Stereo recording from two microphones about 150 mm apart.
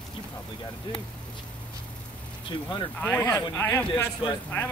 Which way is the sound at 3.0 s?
15° left (ahead or behind).